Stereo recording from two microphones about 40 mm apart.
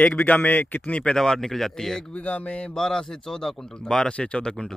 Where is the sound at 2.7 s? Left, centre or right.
Centre.